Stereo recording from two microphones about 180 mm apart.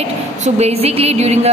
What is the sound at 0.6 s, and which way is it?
Speech, 35° right (ahead or behind).